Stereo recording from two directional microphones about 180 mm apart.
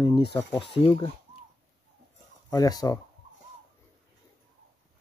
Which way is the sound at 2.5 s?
20° left (ahead or behind).